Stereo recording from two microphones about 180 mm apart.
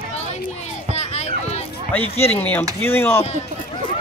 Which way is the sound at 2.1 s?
10° left (ahead or behind).